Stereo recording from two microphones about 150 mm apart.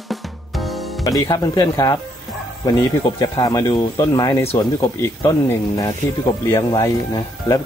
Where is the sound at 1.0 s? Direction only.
25° left (ahead or behind).